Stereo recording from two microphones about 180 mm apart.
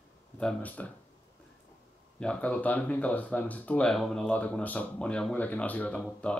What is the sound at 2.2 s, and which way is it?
Speech, 5° left (ahead or behind).